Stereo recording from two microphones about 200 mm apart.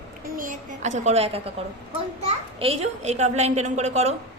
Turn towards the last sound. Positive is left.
turn(degrees=-35)  # may be behind; listen again after turning